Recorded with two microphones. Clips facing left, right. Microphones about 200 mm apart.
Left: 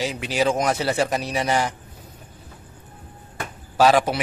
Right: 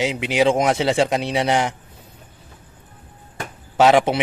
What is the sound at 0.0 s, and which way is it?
Speech, 20° right (ahead or behind).